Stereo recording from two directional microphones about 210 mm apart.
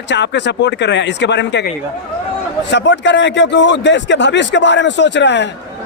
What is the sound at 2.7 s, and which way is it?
A man's voice, 60° left (ahead or behind).